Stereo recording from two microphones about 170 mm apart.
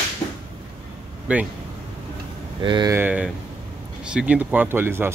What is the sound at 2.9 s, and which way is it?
Speech, 10° right (ahead or behind).